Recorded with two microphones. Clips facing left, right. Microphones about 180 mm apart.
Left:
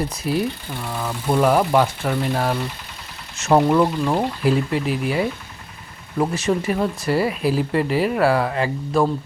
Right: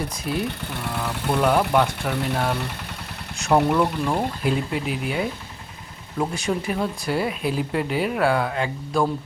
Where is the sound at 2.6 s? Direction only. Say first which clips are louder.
Left 2 dB; 65° right (ahead or behind).